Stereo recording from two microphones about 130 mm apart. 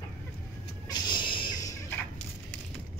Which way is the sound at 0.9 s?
35° left (ahead or behind).